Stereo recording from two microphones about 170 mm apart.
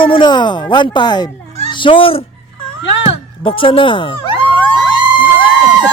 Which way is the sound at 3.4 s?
30° left (ahead or behind).